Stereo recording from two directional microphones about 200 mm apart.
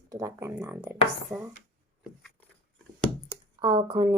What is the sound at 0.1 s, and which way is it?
Speech, 15° right (ahead or behind).